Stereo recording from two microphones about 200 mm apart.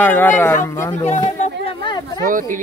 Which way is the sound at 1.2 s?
35° left (ahead or behind).